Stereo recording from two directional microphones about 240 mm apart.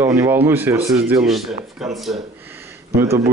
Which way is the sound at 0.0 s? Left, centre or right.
Centre.